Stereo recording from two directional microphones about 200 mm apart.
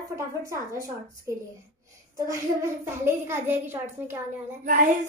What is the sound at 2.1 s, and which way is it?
A child's voice, 15° right (ahead or behind).